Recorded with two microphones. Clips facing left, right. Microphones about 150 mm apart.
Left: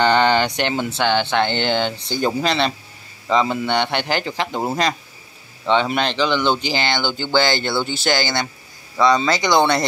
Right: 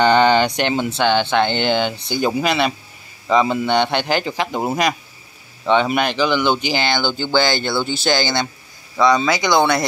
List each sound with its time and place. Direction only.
0.0 s speech: 15° right (ahead or behind)
6.8 s speech: 15° left (ahead or behind)
7.2 s speech: 15° right (ahead or behind)
7.6 s speech: 15° left (ahead or behind)
7.9 s speech: 15° right (ahead or behind)